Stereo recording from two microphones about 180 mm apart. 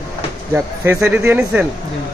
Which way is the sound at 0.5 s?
15° right (ahead or behind).